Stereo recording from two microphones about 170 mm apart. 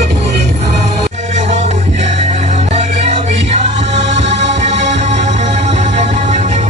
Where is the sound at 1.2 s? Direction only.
40° right (ahead or behind).